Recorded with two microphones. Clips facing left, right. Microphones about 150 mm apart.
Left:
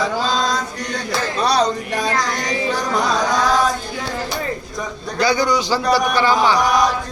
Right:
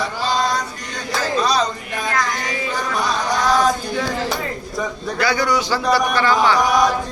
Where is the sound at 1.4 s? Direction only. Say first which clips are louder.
Left 3 dB; 65° left (ahead or behind).